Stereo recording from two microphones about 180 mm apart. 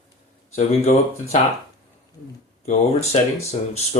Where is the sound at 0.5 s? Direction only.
40° left (ahead or behind).